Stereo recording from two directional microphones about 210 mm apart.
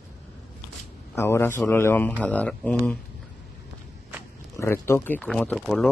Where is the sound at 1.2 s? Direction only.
10° left (ahead or behind).